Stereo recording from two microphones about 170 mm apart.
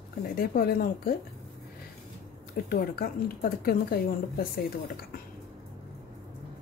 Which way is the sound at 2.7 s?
60° left (ahead or behind).